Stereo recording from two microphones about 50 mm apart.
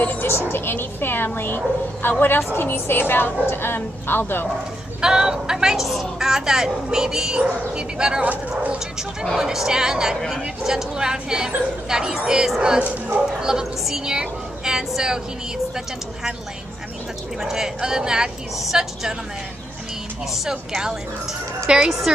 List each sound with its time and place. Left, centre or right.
0.0 s speech: left
0.5 s a woman's voice: left
5.0 s speech: centre
8.2 s speech: right
8.7 s a woman's voice: centre
17.4 s speech: centre
20.4 s speech: centre